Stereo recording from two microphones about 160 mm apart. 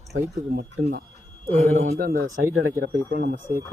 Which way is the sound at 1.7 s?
50° right (ahead or behind).